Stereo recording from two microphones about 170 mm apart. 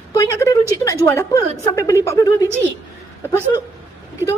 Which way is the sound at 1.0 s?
15° left (ahead or behind).